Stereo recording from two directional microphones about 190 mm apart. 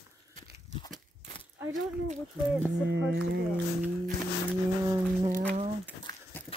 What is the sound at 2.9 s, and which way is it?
Speech, 65° right (ahead or behind).